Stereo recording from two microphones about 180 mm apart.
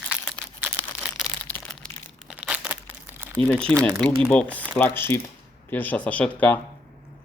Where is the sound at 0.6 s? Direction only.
5° right (ahead or behind).